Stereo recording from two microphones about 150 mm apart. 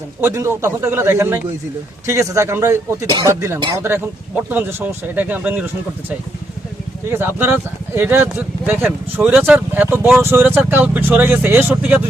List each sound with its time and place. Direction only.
0.2 s speech: 20° right (ahead or behind)